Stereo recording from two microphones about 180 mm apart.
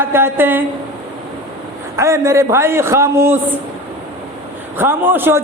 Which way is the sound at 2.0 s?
15° right (ahead or behind).